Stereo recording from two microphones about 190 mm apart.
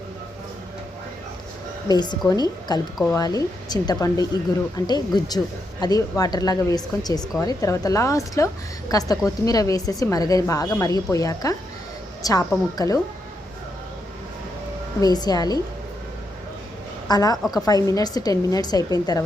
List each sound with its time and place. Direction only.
1.9 s a woman's voice: 20° left (ahead or behind)
15.0 s a woman's voice: 20° left (ahead or behind)
17.1 s a woman's voice: 20° left (ahead or behind)